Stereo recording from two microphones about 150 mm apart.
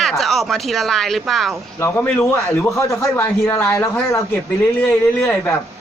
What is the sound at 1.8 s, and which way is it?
A man's voice, 15° left (ahead or behind).